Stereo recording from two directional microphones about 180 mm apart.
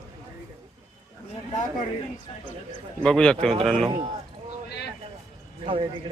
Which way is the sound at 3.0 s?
5° left (ahead or behind).